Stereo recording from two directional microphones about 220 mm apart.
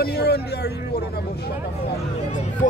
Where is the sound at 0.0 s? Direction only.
45° left (ahead or behind).